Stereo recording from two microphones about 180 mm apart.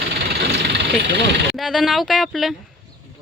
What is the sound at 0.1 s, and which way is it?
Engine, 60° right (ahead or behind).